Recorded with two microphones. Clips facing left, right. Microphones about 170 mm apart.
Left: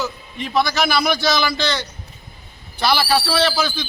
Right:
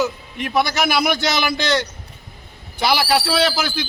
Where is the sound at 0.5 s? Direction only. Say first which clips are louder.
Even; 20° right (ahead or behind).